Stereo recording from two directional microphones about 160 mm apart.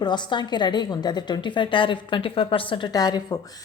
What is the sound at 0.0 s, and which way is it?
A woman's voice, 30° left (ahead or behind).